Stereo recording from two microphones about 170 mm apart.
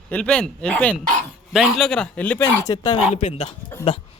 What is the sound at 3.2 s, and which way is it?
Speech, 40° left (ahead or behind).